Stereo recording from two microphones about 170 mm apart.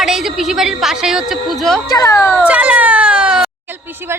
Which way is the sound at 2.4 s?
10° right (ahead or behind).